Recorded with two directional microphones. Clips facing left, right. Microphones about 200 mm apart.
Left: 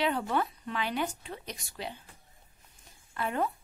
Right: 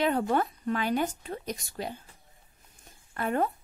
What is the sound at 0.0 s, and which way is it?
Speech, 45° right (ahead or behind).